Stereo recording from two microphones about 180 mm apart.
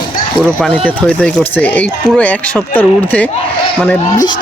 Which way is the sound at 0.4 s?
5° left (ahead or behind).